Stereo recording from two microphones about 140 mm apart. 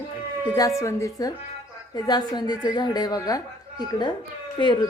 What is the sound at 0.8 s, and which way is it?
A woman's voice, 20° left (ahead or behind).